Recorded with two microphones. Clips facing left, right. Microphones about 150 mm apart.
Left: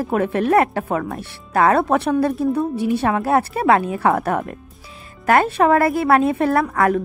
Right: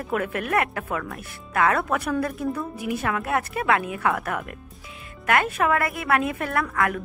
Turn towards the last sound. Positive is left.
turn(degrees=30)  # may be behind; listen again after turning